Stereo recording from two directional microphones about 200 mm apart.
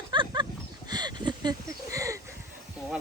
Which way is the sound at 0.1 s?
20° right (ahead or behind).